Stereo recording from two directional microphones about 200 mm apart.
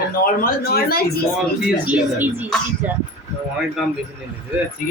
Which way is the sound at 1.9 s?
10° right (ahead or behind).